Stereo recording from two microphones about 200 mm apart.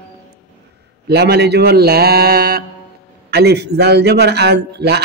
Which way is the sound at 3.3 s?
55° right (ahead or behind).